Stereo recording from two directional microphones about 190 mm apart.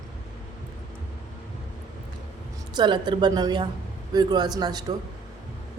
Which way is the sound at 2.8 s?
25° right (ahead or behind).